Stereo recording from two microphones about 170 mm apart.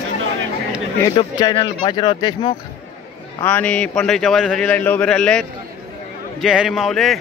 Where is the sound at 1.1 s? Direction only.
25° left (ahead or behind).